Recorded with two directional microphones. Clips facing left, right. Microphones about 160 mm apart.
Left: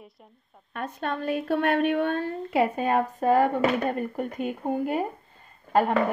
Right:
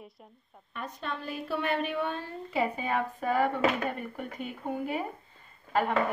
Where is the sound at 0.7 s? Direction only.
55° left (ahead or behind).